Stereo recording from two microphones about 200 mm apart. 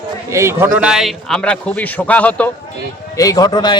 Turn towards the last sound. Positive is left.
turn(degrees=20)  # may be behind; listen again after turning